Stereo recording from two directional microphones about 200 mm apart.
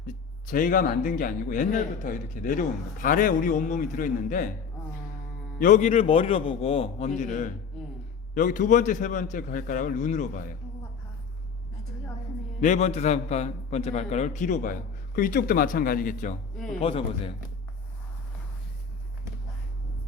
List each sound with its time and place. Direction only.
0.5 s a man's voice: 45° left (ahead or behind)
5.5 s a man's voice: 40° left (ahead or behind)
12.5 s a man's voice: 35° left (ahead or behind)
16.8 s a man's voice: 30° left (ahead or behind)